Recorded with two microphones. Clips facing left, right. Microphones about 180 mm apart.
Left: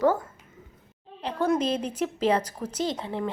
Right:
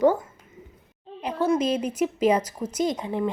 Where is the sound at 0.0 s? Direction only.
15° right (ahead or behind).